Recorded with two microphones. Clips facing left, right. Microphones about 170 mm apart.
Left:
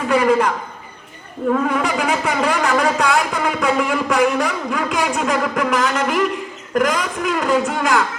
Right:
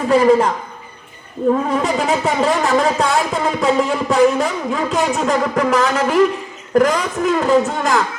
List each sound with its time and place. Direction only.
0.1 s speech: 35° right (ahead or behind)
1.6 s speech: 30° right (ahead or behind)